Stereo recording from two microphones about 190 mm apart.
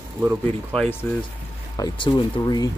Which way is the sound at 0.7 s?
10° left (ahead or behind).